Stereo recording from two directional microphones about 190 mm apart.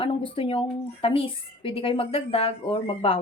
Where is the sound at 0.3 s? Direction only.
30° left (ahead or behind).